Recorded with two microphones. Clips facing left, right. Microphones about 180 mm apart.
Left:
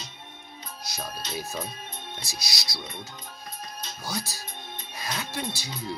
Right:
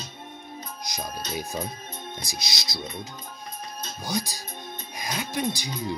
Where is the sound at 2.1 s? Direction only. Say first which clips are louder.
Right 3 dB; 20° right (ahead or behind).